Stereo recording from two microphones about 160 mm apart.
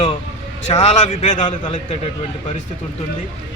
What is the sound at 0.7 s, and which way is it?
Speech, 40° left (ahead or behind).